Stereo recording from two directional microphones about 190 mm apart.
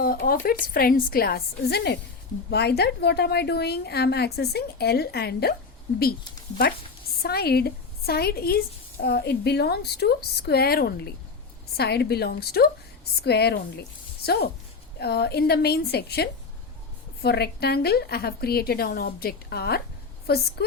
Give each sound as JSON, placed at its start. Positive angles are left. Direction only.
{"t": 0.0, "sound": "a woman's voice", "side_deg": 50}
{"t": 7.2, "sound": "a woman's voice", "side_deg": 55}